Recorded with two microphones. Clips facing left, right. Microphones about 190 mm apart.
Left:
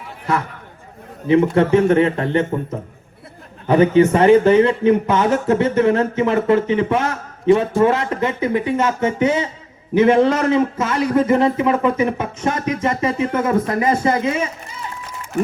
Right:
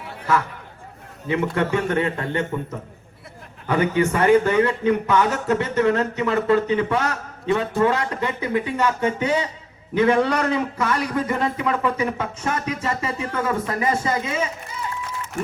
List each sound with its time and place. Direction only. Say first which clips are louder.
1.3 s speech: left 8 dB; 25° left (ahead or behind)
3.7 s speech: left 7 dB; 20° left (ahead or behind)